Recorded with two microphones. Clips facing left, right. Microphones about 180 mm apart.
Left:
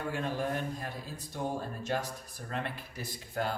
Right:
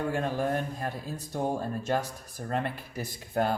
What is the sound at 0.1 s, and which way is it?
Speech, 50° right (ahead or behind).